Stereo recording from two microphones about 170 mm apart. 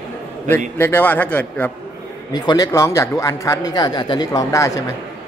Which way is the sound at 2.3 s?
25° left (ahead or behind).